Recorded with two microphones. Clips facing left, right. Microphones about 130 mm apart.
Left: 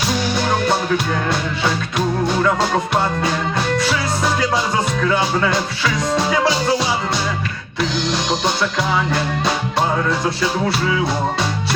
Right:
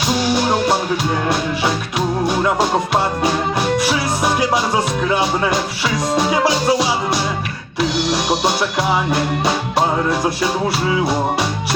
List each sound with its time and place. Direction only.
3.2 s music: 20° right (ahead or behind)
9.0 s music: 20° right (ahead or behind)